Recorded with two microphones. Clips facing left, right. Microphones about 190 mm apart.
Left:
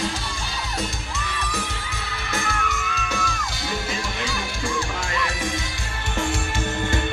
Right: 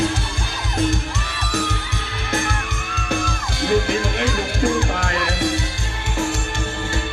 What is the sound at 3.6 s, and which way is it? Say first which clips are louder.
Music: right 11 dB; 55° right (ahead or behind).